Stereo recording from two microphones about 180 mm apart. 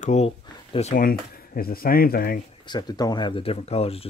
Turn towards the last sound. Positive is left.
turn(degrees=35)  # may be behind; listen again after turning